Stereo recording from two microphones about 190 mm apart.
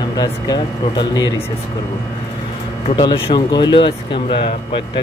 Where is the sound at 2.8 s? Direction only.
25° left (ahead or behind).